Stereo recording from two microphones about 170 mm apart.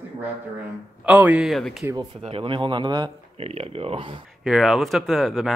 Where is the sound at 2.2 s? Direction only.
30° right (ahead or behind).